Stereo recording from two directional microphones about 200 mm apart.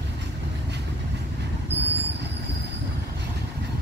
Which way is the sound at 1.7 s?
60° right (ahead or behind).